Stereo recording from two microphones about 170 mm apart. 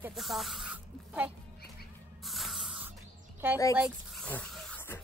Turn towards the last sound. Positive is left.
turn(degrees=10)  # may be behind; listen again after turning